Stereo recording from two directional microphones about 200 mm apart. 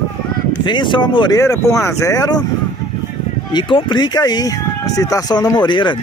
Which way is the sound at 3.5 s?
20° left (ahead or behind).